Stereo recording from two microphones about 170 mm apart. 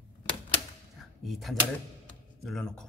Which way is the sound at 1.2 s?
Centre (ahead or behind).